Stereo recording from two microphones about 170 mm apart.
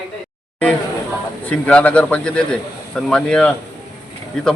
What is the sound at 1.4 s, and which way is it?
A man's voice, 10° left (ahead or behind).